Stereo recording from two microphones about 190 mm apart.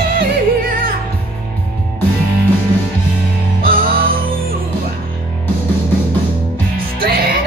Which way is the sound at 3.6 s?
50° right (ahead or behind).